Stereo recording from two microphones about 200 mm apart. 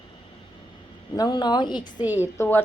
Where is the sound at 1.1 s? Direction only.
20° left (ahead or behind).